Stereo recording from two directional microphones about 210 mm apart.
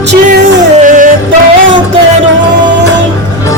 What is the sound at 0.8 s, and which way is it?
Music, 40° right (ahead or behind).